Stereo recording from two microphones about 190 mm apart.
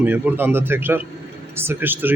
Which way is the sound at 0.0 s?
10° right (ahead or behind).